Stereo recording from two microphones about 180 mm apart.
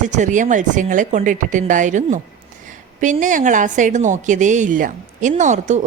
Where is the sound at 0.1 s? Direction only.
45° right (ahead or behind).